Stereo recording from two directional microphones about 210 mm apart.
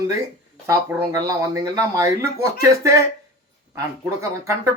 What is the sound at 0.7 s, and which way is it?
Speech, 15° right (ahead or behind).